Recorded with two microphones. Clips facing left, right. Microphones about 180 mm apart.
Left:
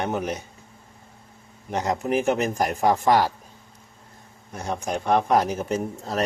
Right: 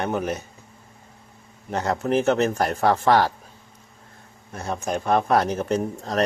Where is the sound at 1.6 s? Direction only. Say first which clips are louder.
Right 1 dB; 15° left (ahead or behind).